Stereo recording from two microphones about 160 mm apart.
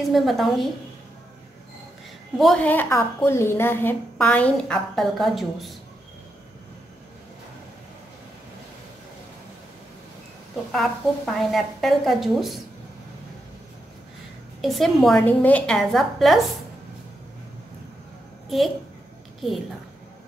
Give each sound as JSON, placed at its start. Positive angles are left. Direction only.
{"t": 0.1, "sound": "a woman's voice", "side_deg": 0}
{"t": 2.3, "sound": "a woman's voice", "side_deg": 5}
{"t": 10.5, "sound": "a woman's voice", "side_deg": 0}
{"t": 14.6, "sound": "a woman's voice", "side_deg": 0}